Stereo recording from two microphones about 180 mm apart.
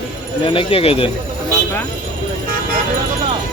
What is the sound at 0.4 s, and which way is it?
Speech, 30° left (ahead or behind).